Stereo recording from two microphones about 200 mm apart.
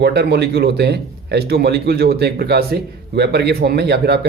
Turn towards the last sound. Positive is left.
turn(degrees=-55)  # may be behind; listen again after turning